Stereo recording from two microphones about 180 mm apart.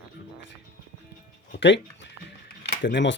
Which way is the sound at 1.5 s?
75° left (ahead or behind).